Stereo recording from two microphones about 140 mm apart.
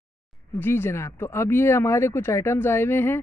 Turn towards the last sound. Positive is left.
turn(degrees=15)  # may be behind; listen again after turning